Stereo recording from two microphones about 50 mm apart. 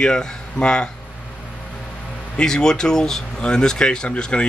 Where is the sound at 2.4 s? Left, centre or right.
Centre.